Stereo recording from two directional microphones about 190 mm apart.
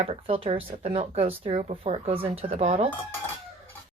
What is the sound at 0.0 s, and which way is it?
Speech, 30° right (ahead or behind).